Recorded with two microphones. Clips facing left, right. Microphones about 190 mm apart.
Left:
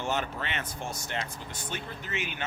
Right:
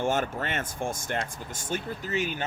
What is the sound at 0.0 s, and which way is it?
Speech, 50° right (ahead or behind).